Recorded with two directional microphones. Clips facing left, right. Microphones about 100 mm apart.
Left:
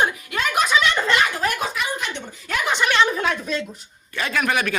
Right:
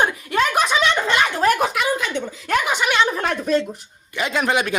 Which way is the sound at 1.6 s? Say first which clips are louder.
Right 5 dB; 80° right.